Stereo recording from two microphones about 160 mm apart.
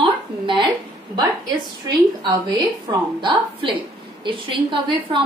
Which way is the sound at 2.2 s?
25° right (ahead or behind).